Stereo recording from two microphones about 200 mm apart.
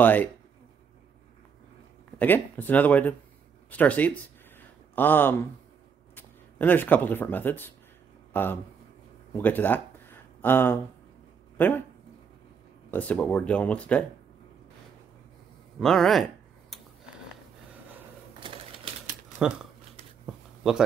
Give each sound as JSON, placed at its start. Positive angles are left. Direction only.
{"t": 0.0, "sound": "speech", "side_deg": 10}
{"t": 2.1, "sound": "speech", "side_deg": 10}
{"t": 9.3, "sound": "a sound", "side_deg": 10}
{"t": 11.5, "sound": "speech", "side_deg": 10}
{"t": 12.9, "sound": "speech", "side_deg": 5}
{"t": 15.8, "sound": "speech", "side_deg": 0}
{"t": 18.4, "sound": "typewriter", "side_deg": -25}
{"t": 19.3, "sound": "speech", "side_deg": -5}